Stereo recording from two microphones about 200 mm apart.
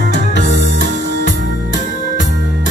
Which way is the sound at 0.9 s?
65° left (ahead or behind).